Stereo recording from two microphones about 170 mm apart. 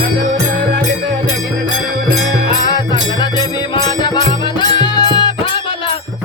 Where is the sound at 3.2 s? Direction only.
25° left (ahead or behind).